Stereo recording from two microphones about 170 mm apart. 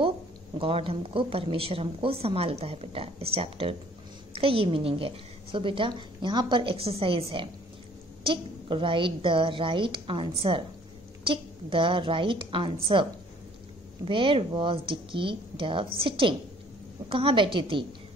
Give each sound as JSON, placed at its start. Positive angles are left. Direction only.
{"t": 0.6, "sound": "a woman's voice", "side_deg": -35}
{"t": 14.0, "sound": "a woman's voice", "side_deg": -30}